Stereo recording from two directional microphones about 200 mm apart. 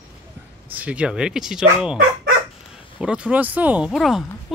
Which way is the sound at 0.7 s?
5° right (ahead or behind).